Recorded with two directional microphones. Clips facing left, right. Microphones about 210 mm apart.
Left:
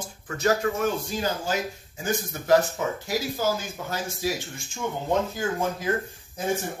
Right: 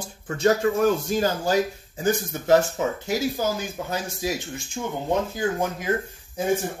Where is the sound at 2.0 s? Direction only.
25° right (ahead or behind).